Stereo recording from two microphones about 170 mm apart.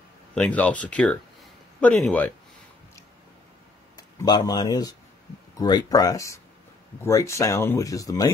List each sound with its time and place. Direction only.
0.3 s speech: 10° left (ahead or behind)
3.9 s speech: 25° left (ahead or behind)